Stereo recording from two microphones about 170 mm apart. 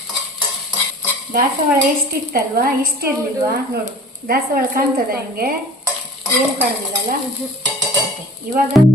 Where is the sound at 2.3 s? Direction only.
60° right (ahead or behind).